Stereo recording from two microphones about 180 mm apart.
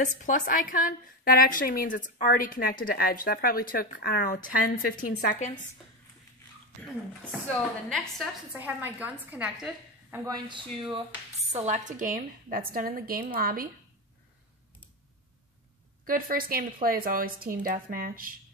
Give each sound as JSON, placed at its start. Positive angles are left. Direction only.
{"t": 0.0, "sound": "a woman's voice", "side_deg": 45}
{"t": 7.4, "sound": "a woman's voice", "side_deg": 5}
{"t": 8.5, "sound": "a woman's voice", "side_deg": -10}
{"t": 10.1, "sound": "speech", "side_deg": -20}
{"t": 11.5, "sound": "speech", "side_deg": -40}
{"t": 16.1, "sound": "speech", "side_deg": -50}